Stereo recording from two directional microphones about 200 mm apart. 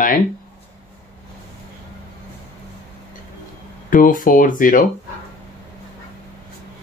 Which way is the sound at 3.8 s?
40° left (ahead or behind).